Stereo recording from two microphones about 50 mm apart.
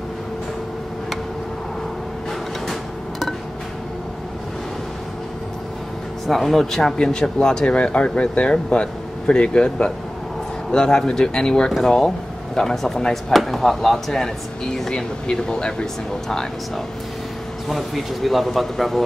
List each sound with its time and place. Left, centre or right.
2.6 s music: centre
6.2 s speech: centre
17.6 s speech: centre